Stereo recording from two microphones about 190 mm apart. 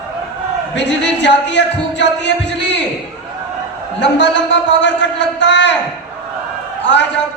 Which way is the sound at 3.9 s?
70° left (ahead or behind).